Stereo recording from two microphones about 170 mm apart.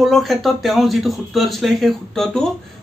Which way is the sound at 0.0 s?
Centre (ahead or behind).